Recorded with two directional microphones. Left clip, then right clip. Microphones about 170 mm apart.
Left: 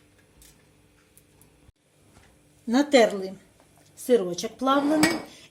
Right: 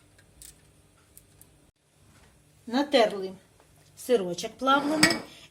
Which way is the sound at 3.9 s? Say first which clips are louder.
Left 3 dB; 30° left (ahead or behind).